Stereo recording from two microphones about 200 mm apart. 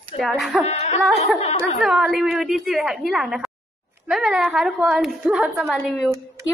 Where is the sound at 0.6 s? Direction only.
30° left (ahead or behind).